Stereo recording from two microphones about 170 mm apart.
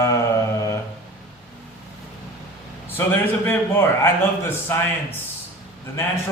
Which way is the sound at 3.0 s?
10° left (ahead or behind).